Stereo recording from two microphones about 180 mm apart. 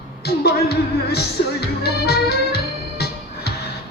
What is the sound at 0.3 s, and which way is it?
Music, 65° left (ahead or behind).